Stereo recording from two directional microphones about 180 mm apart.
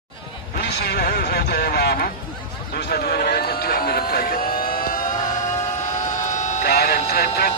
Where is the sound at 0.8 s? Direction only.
60° left (ahead or behind).